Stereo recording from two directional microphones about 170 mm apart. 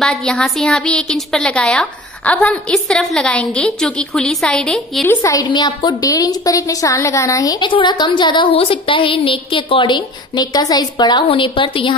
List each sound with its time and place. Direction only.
0.0 s a woman's voice: 5° left (ahead or behind); by 11.9 s 30° left (ahead or behind)